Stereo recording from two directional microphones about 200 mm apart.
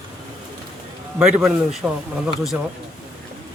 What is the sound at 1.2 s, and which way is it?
Speech, centre (ahead or behind).